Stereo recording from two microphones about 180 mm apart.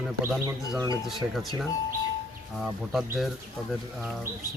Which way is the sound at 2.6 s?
Centre (ahead or behind).